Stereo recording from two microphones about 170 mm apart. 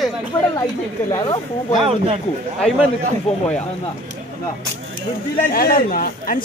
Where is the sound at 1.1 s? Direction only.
25° left (ahead or behind).